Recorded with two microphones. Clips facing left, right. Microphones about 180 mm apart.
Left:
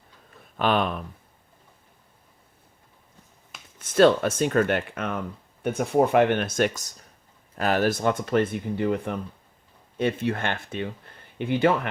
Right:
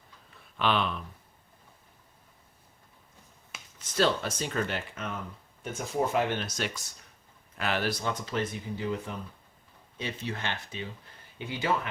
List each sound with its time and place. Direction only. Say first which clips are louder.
0.5 s speech: left 5 dB; 45° left (ahead or behind)
3.8 s speech: left 9 dB; 55° left (ahead or behind)